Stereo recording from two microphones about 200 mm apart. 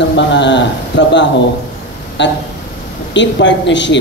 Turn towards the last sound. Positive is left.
turn(degrees=65)  # may be behind; listen again after turning